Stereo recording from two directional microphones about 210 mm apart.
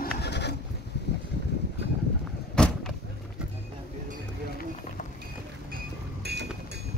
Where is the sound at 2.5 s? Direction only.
5° left (ahead or behind).